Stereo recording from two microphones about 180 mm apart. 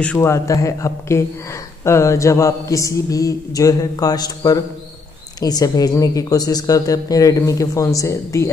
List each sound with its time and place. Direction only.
0.0 s a man's voice: 10° left (ahead or behind)